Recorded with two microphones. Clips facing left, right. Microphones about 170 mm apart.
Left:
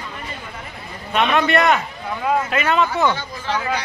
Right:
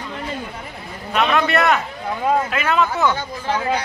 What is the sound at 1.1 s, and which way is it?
Speech, centre (ahead or behind).